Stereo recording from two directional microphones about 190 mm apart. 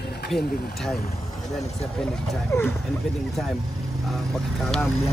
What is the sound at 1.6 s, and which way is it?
Speech, 35° left (ahead or behind).